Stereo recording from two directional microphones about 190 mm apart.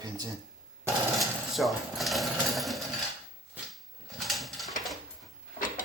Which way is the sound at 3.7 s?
Centre (ahead or behind).